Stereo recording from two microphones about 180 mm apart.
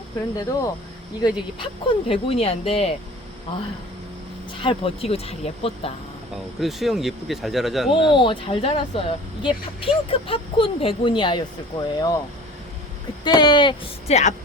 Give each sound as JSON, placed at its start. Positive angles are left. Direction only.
{"t": 1.2, "sound": "speech", "side_deg": 25}
{"t": 6.3, "sound": "speech", "side_deg": 0}
{"t": 7.9, "sound": "speech", "side_deg": 30}
{"t": 13.2, "sound": "speech", "side_deg": 25}